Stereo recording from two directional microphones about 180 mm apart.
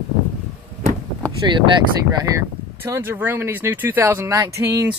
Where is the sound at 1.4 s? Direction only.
25° right (ahead or behind).